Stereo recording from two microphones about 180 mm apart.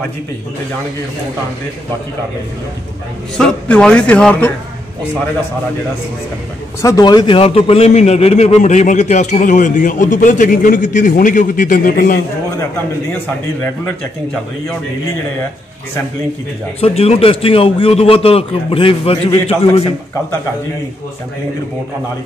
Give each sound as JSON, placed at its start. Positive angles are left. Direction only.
{"t": 3.3, "sound": "speech", "side_deg": 5}
{"t": 6.8, "sound": "a man's voice", "side_deg": 20}
{"t": 13.1, "sound": "a man's voice", "side_deg": 10}
{"t": 16.8, "sound": "a man's voice", "side_deg": 35}